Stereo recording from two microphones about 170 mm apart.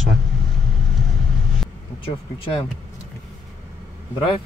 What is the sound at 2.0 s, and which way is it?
Speech, 30° left (ahead or behind).